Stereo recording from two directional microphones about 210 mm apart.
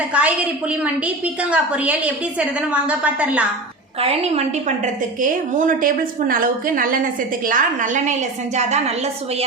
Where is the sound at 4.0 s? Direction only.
30° right (ahead or behind).